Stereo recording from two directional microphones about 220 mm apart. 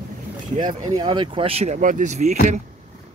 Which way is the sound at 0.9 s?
20° right (ahead or behind).